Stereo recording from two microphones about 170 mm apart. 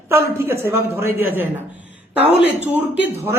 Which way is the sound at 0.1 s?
15° right (ahead or behind).